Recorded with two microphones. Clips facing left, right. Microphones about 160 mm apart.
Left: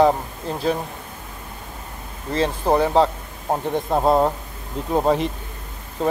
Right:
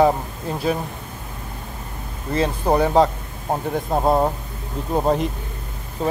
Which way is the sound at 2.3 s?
10° right (ahead or behind).